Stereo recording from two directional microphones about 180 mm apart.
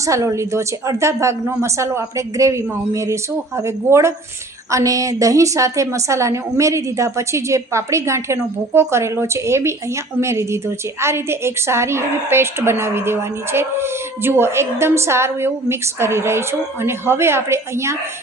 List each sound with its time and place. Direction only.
0.0 s a woman's voice: 15° right (ahead or behind)